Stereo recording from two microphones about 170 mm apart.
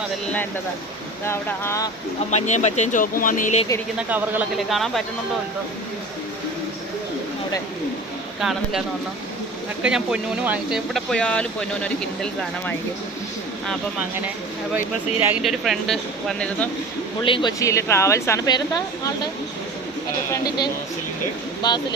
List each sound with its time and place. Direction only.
1.2 s speech: 15° left (ahead or behind)
2.3 s speech: 40° left (ahead or behind)
3.9 s speech: 10° right (ahead or behind)
8.4 s speech: centre (ahead or behind)
9.8 s speech: 5° right (ahead or behind)
14.8 s speech: 10° right (ahead or behind)
15.4 s speech: centre (ahead or behind)
17.2 s a woman's voice: 30° left (ahead or behind)
17.6 s a woman's voice: 20° left (ahead or behind)